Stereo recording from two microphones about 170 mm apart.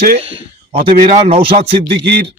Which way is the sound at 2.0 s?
75° right (ahead or behind).